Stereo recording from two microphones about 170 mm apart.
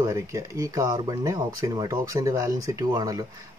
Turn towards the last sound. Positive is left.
turn(degrees=-20)  # may be behind; listen again after turning